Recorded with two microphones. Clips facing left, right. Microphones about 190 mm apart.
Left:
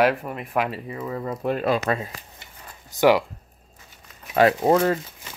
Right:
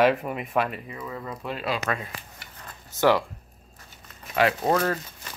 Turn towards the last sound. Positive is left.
turn(degrees=20)  # may be behind; listen again after turning